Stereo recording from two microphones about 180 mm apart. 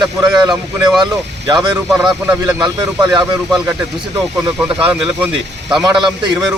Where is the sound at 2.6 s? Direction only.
20° right (ahead or behind).